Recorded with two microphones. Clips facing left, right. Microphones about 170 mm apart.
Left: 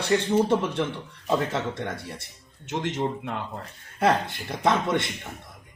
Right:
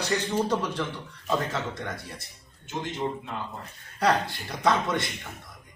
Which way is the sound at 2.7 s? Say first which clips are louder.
Left 4 dB; 80° left.